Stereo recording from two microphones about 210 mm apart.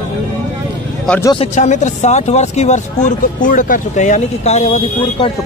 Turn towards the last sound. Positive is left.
turn(degrees=30)  # may be behind; listen again after turning